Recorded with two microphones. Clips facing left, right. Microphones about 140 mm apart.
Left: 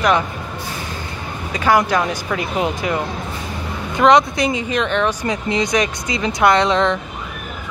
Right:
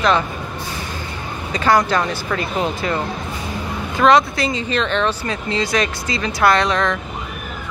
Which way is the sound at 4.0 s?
20° left (ahead or behind).